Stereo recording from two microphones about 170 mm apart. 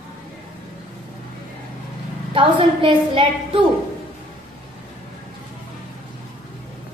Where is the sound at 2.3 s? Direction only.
30° right (ahead or behind).